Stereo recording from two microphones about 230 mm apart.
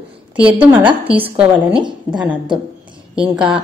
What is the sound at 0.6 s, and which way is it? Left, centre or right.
Speech, centre.